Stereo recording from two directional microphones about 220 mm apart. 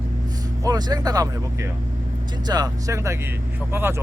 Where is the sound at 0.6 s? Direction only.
15° right (ahead or behind).